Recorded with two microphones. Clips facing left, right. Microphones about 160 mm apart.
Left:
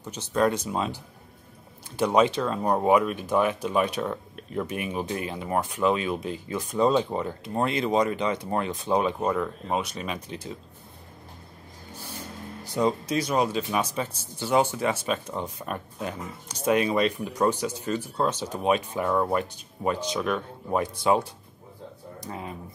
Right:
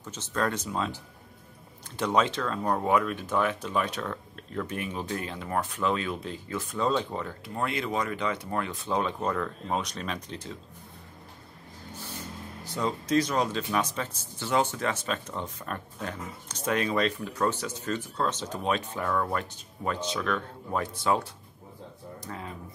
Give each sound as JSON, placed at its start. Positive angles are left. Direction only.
{"t": 0.0, "sound": "speech", "side_deg": 15}
{"t": 2.0, "sound": "speech", "side_deg": 10}
{"t": 12.7, "sound": "speech", "side_deg": 15}